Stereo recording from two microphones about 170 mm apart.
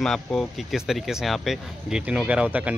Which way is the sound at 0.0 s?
Centre (ahead or behind).